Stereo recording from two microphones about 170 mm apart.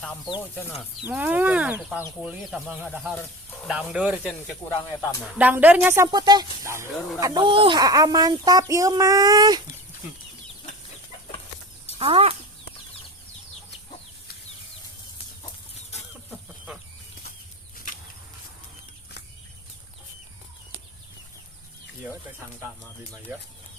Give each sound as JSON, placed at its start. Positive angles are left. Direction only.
{"t": 1.0, "sound": "speech", "side_deg": -10}
{"t": 5.4, "sound": "speech", "side_deg": -10}
{"t": 6.1, "sound": "speech", "side_deg": -25}
{"t": 11.9, "sound": "speech", "side_deg": -35}